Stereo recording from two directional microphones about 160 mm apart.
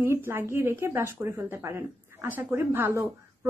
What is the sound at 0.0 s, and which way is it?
A woman's voice, 15° right (ahead or behind).